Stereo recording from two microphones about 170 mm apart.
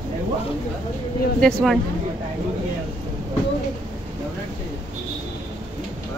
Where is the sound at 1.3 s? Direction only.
Centre (ahead or behind).